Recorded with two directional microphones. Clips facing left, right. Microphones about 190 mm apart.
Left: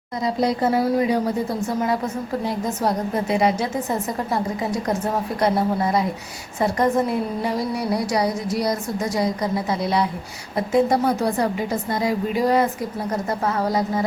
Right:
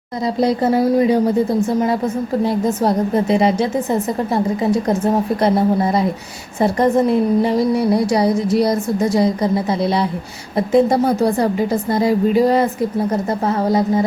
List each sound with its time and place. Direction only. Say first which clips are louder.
0.4 s a woman's voice: right 5 dB; 30° right (ahead or behind)